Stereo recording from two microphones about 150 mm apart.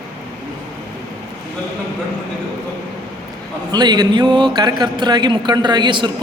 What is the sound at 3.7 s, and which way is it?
Speech, 30° right (ahead or behind).